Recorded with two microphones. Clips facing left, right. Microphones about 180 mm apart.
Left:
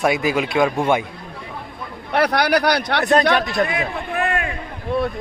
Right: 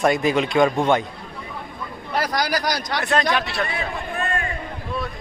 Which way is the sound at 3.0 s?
40° left (ahead or behind).